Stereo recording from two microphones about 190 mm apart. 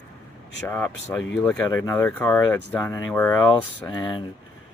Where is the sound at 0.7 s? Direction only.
10° left (ahead or behind).